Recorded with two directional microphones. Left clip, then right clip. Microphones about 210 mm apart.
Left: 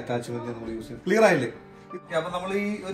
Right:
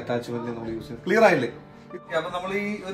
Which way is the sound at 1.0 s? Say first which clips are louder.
Right 1 dB; 25° right (ahead or behind).